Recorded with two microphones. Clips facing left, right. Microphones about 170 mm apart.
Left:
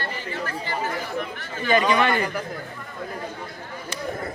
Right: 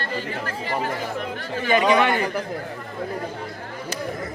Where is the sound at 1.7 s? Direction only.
15° right (ahead or behind).